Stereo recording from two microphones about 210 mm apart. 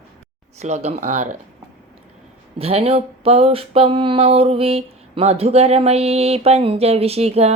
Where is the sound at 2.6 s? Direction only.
30° right (ahead or behind).